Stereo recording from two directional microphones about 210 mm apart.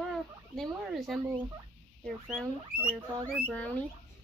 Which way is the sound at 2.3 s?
Centre (ahead or behind).